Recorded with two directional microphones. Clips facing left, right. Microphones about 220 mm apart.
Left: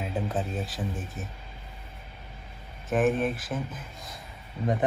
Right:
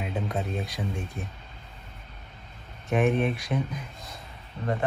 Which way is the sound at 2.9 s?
Centre (ahead or behind).